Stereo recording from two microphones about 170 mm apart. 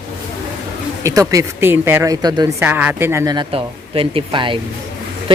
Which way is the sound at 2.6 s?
10° right (ahead or behind).